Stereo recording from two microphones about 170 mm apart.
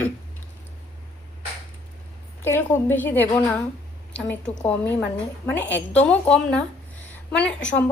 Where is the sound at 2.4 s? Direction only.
15° left (ahead or behind).